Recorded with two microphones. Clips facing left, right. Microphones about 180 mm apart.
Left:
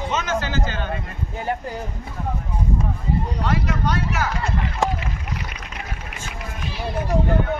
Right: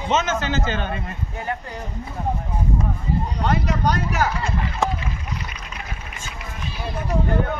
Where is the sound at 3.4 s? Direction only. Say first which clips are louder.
Right 4 dB; 40° right (ahead or behind).